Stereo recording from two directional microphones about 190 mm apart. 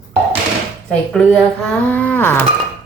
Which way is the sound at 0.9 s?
5° left (ahead or behind).